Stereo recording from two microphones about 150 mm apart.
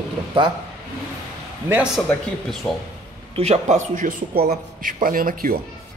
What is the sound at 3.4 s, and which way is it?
Speech, 50° right (ahead or behind).